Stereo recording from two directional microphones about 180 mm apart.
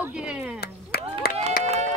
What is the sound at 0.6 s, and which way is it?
Clapping, 60° left (ahead or behind).